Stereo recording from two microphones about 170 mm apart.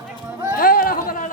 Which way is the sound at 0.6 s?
60° left (ahead or behind).